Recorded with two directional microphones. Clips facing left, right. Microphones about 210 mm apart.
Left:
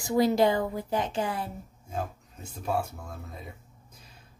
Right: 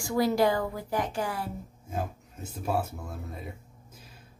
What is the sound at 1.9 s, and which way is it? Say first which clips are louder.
Speech: even; 5° right (ahead or behind).